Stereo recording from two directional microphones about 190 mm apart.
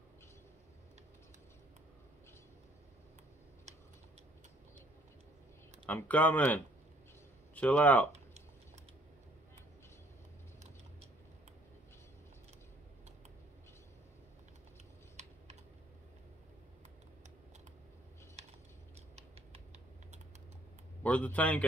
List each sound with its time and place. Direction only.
5.9 s speech: 10° left (ahead or behind)
15.2 s typing: 40° right (ahead or behind)
21.0 s speech: 5° left (ahead or behind)